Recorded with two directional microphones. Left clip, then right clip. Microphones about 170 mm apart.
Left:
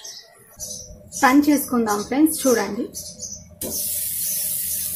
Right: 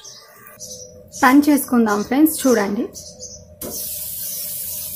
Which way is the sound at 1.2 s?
25° right (ahead or behind).